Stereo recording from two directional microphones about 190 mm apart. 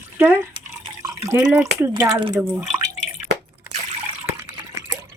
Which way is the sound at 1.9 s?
25° right (ahead or behind).